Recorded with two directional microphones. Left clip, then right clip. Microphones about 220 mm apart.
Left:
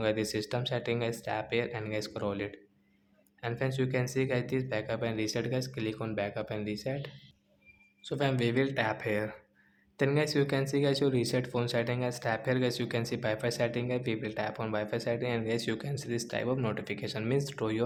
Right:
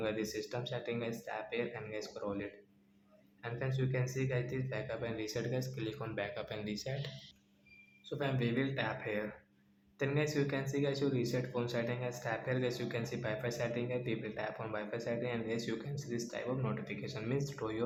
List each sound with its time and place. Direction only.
0.0 s speech: 40° left (ahead or behind)